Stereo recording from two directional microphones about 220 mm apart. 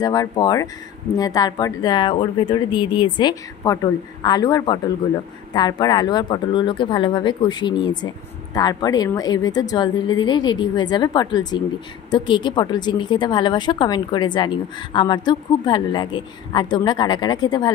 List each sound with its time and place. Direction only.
0.0 s speech: 15° left (ahead or behind)